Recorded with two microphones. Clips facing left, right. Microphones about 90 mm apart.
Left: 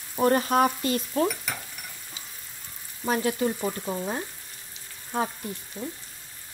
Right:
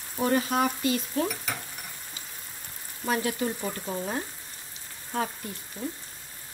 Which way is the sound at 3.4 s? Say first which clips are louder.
Left 4 dB; 10° left (ahead or behind).